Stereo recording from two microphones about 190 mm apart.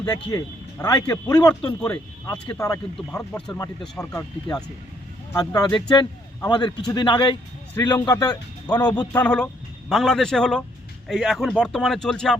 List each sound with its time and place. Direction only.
0.3 s a man's voice: 15° left (ahead or behind)
9.1 s speech: 5° left (ahead or behind)